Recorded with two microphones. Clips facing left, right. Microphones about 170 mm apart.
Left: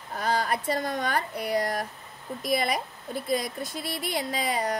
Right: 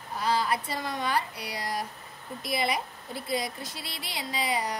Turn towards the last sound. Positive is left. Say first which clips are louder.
# left 2 dB
turn(degrees=50)  # may be behind; listen again after turning